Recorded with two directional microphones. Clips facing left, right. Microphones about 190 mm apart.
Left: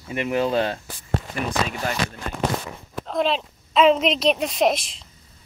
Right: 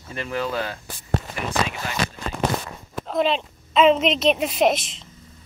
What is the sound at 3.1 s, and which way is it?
Speech, centre (ahead or behind).